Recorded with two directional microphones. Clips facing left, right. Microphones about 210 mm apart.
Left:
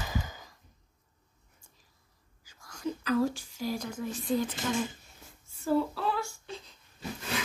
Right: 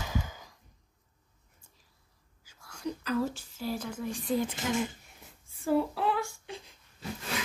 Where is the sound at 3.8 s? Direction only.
5° right (ahead or behind).